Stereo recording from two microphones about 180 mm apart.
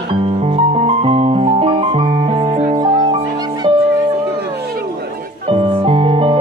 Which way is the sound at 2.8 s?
25° right (ahead or behind).